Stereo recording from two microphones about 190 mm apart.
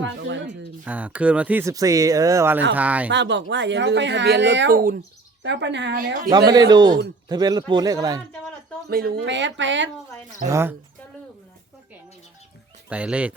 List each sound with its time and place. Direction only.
0.0 s speech: 75° right (ahead or behind)
0.9 s speech: 10° right (ahead or behind)
3.1 s speech: 70° right (ahead or behind)
4.7 s speech: 50° right (ahead or behind)
5.4 s speech: 65° right (ahead or behind)
6.5 s speech: 20° right (ahead or behind)
8.9 s speech: 50° right (ahead or behind); by 9.9 s 70° right (ahead or behind)
10.5 s speech: 15° right (ahead or behind)
12.9 s speech: 5° right (ahead or behind)